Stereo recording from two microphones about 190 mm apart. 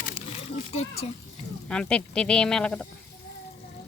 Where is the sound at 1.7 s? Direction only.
5° left (ahead or behind).